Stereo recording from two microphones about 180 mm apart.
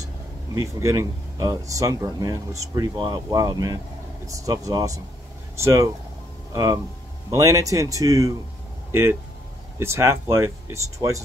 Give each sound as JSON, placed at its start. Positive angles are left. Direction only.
{"t": 0.6, "sound": "speech", "side_deg": -15}
{"t": 9.8, "sound": "speech", "side_deg": -15}